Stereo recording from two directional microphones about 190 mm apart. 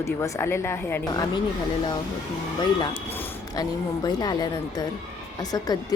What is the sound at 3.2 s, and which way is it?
Speech, 20° left (ahead or behind).